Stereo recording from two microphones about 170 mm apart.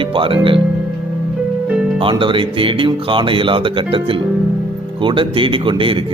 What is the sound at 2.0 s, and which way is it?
Speech, 30° right (ahead or behind).